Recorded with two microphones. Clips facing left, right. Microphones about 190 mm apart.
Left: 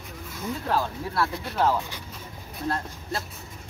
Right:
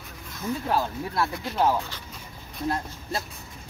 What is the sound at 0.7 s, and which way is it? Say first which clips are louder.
Speech: left 1 dB; 15° right (ahead or behind).